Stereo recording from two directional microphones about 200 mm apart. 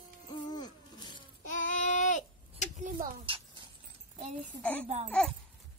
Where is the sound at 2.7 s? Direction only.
40° right (ahead or behind).